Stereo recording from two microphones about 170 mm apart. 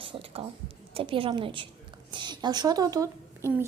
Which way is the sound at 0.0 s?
30° right (ahead or behind).